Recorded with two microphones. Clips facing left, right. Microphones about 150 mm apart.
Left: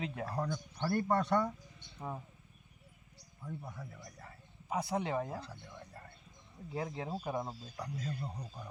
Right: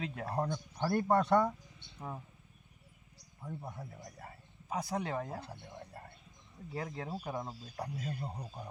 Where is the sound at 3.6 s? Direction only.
25° right (ahead or behind).